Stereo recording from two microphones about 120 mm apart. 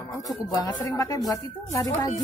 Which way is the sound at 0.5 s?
30° left (ahead or behind).